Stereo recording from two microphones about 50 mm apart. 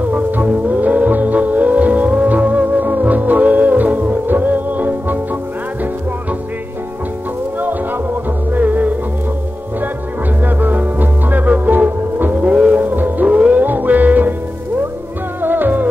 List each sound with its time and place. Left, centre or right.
0.7 s music: right
8.5 s music: right
10.4 s music: right
12.5 s music: right
12.9 s music: right
13.4 s music: right
13.7 s music: right
15.4 s music: right